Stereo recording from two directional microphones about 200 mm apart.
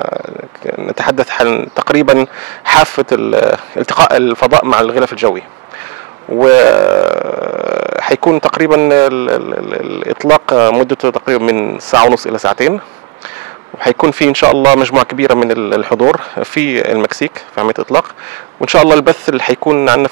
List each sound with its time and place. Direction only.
0.7 s speech: 20° right (ahead or behind)
6.5 s burping: 20° right (ahead or behind)
8.2 s speech: 20° right (ahead or behind)
13.8 s speech: 15° right (ahead or behind)
14.4 s speech: 20° right (ahead or behind)
16.5 s speech: 10° right (ahead or behind)